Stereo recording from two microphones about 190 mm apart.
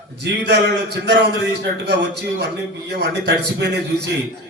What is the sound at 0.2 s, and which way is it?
Speech, 65° right (ahead or behind).